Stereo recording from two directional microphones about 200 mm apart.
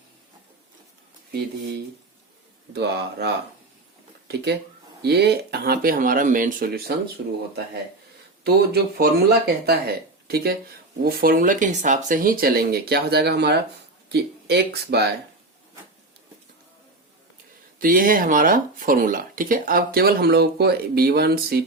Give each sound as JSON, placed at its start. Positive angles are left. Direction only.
{"t": 2.7, "sound": "speech", "side_deg": -55}
{"t": 5.0, "sound": "speech", "side_deg": -55}
{"t": 7.2, "sound": "speech", "side_deg": -60}
{"t": 8.4, "sound": "speech", "side_deg": -55}
{"t": 17.7, "sound": "speech", "side_deg": -45}